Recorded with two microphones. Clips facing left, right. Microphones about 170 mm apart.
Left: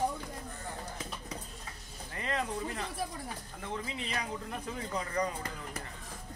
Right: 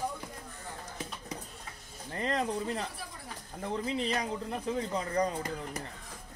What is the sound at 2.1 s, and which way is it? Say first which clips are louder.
Speech: right 4 dB; 35° right (ahead or behind).